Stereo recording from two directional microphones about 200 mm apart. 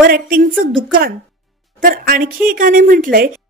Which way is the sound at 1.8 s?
45° right (ahead or behind).